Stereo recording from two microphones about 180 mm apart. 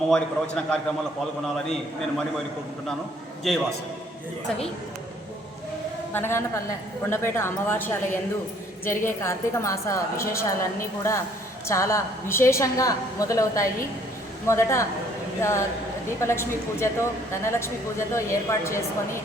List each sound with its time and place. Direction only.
0.1 s a man's voice: 5° left (ahead or behind)
3.5 s a man's voice: centre (ahead or behind)
6.1 s speech: 15° left (ahead or behind)